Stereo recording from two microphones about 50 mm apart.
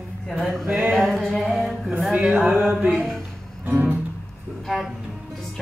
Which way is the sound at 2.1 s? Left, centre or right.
Right.